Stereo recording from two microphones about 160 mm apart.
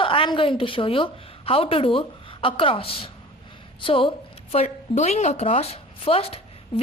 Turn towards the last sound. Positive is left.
turn(degrees=35)  # may be behind; listen again after turning